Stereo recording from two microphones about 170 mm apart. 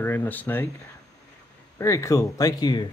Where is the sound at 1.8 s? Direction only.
20° left (ahead or behind).